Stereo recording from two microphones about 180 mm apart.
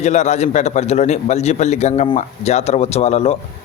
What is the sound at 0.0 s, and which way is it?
Speech, 40° left (ahead or behind).